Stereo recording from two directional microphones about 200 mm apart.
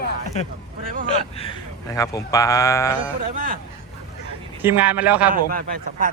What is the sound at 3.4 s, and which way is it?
Speech, 45° right (ahead or behind).